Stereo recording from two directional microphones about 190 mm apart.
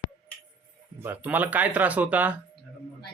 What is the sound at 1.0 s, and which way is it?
Speech, 10° right (ahead or behind).